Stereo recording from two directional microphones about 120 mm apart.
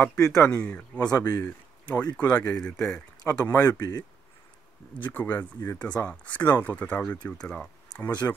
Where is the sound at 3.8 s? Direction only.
30° left (ahead or behind).